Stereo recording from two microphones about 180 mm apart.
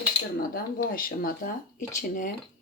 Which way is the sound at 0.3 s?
55° left (ahead or behind).